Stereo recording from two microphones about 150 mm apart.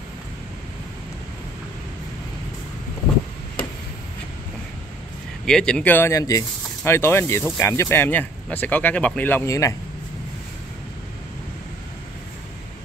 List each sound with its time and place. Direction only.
5.5 s speech: 5° left (ahead or behind); by 9.8 s 20° left (ahead or behind)